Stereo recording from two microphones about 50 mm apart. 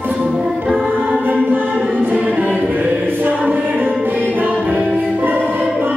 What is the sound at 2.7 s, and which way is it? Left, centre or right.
Music, right.